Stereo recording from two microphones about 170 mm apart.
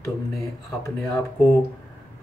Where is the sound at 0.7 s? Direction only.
15° left (ahead or behind).